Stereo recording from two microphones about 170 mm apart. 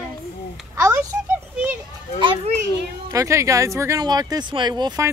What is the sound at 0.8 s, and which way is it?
Speech, 15° right (ahead or behind).